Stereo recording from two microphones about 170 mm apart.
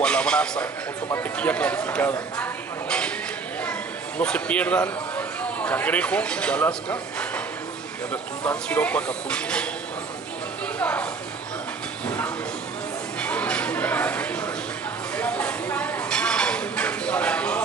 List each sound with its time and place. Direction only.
0.0 s a sound: 5° left (ahead or behind)
1.0 s speech: 10° left (ahead or behind)
4.2 s a man's voice: 5° left (ahead or behind)
10.8 s speech: 5° left (ahead or behind)
13.2 s a sound: 5° left (ahead or behind)
15.1 s dishes: 5° left (ahead or behind)